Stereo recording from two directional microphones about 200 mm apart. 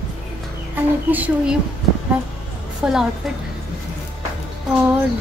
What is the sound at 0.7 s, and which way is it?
Speech, 10° right (ahead or behind).